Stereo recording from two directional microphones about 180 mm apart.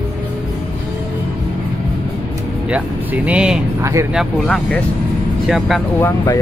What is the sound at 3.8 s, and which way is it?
Speech, 15° right (ahead or behind).